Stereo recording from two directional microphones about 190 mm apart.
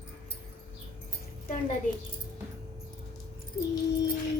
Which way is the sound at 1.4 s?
35° left (ahead or behind).